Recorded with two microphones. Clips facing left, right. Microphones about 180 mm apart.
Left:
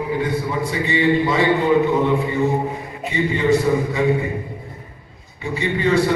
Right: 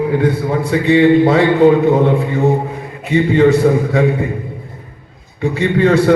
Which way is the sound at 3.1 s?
65° right (ahead or behind).